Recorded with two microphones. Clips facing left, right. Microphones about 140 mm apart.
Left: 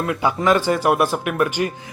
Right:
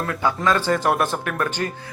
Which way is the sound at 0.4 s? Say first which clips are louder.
Left 3 dB; 15° left (ahead or behind).